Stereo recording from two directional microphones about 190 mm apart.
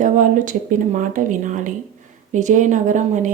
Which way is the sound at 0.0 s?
45° right (ahead or behind).